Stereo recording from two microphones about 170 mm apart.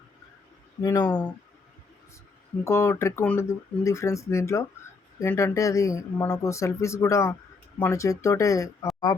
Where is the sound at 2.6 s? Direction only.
15° left (ahead or behind).